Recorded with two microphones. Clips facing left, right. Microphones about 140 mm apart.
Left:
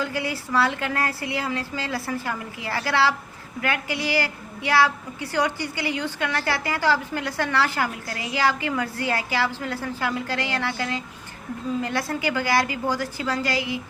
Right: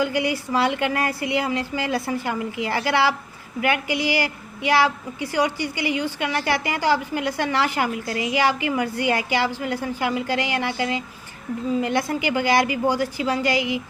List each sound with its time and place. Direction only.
0.0 s a woman's voice: 15° right (ahead or behind)